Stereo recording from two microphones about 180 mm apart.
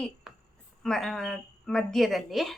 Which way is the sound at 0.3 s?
5° right (ahead or behind).